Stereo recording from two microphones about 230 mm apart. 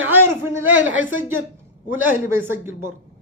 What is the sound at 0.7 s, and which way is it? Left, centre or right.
Speech, right.